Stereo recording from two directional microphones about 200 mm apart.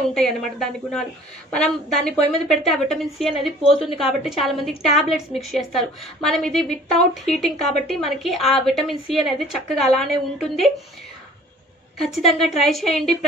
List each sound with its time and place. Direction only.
0.1 s a woman's voice: centre (ahead or behind)
12.3 s a woman's voice: centre (ahead or behind)